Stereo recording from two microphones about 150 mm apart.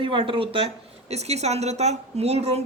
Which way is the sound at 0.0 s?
35° right (ahead or behind).